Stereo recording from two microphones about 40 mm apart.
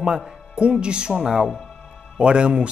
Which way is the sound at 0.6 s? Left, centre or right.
Right.